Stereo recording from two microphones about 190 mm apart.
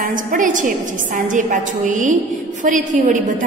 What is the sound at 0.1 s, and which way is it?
A woman's voice, 45° right (ahead or behind).